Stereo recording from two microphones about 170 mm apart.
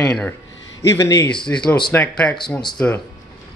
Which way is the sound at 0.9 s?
15° left (ahead or behind).